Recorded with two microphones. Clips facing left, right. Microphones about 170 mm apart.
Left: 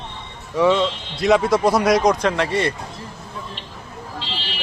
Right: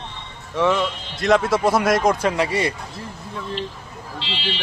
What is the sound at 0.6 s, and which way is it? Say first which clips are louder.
A man's voice: left 3 dB; centre (ahead or behind).